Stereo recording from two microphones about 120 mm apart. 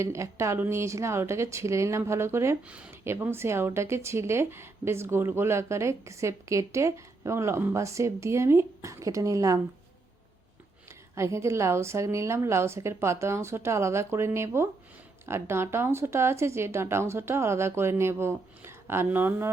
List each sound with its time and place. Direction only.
0.0 s speech: 25° right (ahead or behind)
2.6 s speech: 10° right (ahead or behind); by 9.6 s 25° right (ahead or behind)
11.1 s speech: 25° right (ahead or behind)